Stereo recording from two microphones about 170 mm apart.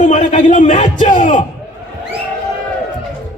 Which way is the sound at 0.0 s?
45° left (ahead or behind).